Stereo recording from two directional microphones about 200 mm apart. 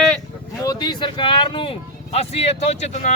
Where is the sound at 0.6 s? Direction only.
20° left (ahead or behind).